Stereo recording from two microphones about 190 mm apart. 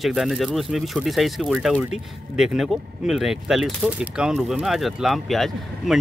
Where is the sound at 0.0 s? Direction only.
Centre (ahead or behind).